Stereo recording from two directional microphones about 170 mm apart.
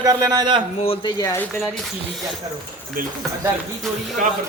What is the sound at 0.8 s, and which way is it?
Speech, 35° left (ahead or behind).